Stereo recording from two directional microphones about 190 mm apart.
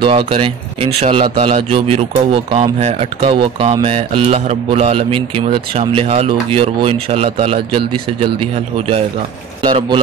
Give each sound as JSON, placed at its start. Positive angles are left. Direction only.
{"t": 0.0, "sound": "speech", "side_deg": -30}